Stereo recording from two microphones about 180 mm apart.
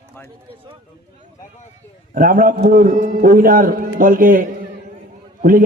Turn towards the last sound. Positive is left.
turn(degrees=-50)  # may be behind; listen again after turning